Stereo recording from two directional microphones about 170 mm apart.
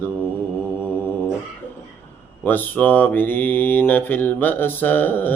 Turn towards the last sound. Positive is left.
turn(degrees=10)  # may be behind; listen again after turning